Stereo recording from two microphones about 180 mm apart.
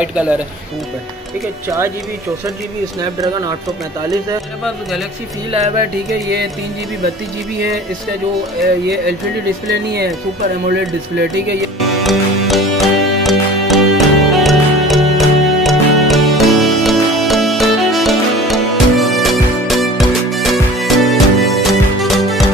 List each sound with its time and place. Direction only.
0.0 s speech: 5° right (ahead or behind)
3.0 s speech: 20° right (ahead or behind)
6.2 s speech: 70° right (ahead or behind)
8.8 s speech: 65° right (ahead or behind)
12.0 s music: centre (ahead or behind)